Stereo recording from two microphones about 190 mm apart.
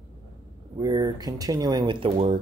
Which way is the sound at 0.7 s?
20° right (ahead or behind).